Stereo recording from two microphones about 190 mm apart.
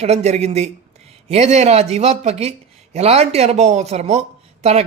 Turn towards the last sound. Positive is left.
turn(degrees=-35)  # may be behind; listen again after turning